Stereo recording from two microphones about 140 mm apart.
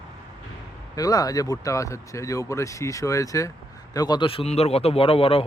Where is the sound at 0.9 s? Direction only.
25° left (ahead or behind).